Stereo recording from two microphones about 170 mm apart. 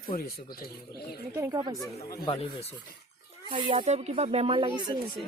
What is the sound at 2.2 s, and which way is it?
Speech, 30° left (ahead or behind).